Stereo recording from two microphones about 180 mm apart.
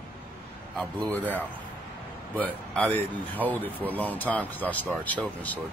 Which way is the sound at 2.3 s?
5° left (ahead or behind).